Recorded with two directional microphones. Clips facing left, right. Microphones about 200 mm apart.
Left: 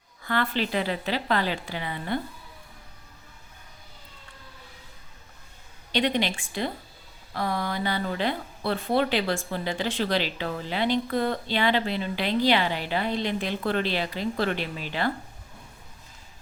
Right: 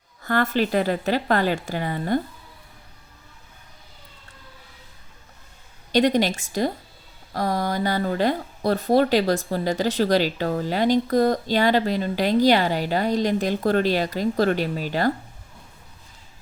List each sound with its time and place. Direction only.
0.2 s a woman's voice: 45° right (ahead or behind)
5.9 s a woman's voice: 40° right (ahead or behind)